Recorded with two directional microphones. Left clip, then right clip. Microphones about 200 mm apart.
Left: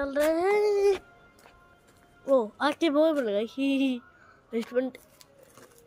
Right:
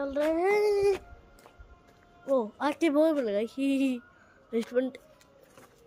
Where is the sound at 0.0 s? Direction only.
10° left (ahead or behind).